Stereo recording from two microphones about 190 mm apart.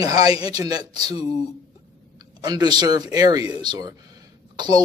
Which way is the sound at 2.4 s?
20° right (ahead or behind).